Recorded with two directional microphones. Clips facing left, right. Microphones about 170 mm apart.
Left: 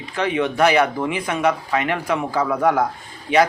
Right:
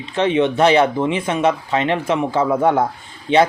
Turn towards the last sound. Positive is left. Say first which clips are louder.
# right 2 dB
turn(degrees=-25)  # may be behind; listen again after turning